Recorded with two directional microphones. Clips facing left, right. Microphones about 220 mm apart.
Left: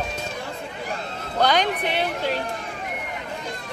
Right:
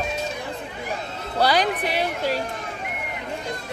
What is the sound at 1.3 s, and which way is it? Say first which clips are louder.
Music: even; 10° right (ahead or behind).